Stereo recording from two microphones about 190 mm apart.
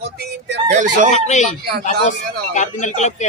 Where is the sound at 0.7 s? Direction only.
40° right (ahead or behind).